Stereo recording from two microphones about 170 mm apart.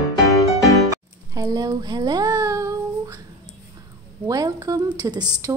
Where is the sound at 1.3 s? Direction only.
20° right (ahead or behind).